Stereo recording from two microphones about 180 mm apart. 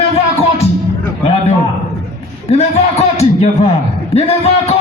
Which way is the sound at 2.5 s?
35° left (ahead or behind).